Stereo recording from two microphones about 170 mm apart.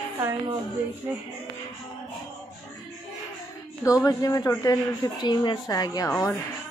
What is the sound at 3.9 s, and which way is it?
A woman's voice, 20° left (ahead or behind).